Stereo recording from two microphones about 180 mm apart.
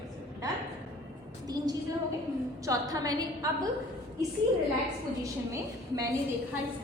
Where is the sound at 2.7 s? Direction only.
20° right (ahead or behind).